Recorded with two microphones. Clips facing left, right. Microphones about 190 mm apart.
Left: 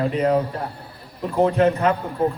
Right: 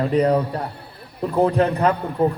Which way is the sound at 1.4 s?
35° right (ahead or behind).